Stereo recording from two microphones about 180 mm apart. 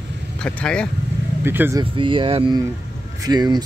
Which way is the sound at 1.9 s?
30° right (ahead or behind).